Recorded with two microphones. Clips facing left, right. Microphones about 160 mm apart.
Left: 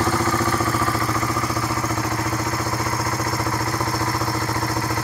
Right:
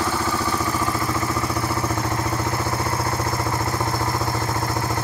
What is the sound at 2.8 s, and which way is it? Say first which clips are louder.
Vehicle: even; 30° right (ahead or behind).